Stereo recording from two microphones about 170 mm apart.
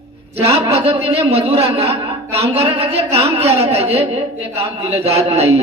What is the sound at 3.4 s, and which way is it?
Speech, 15° right (ahead or behind).